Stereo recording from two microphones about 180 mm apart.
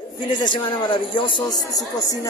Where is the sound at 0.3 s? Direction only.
25° left (ahead or behind).